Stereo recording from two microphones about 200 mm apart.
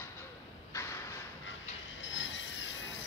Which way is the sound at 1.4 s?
70° left (ahead or behind).